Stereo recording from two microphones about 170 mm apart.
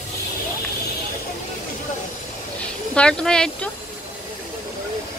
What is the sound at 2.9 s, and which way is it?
Speech, 5° left (ahead or behind).